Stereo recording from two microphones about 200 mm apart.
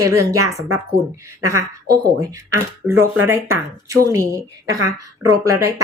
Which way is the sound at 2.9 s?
90° right.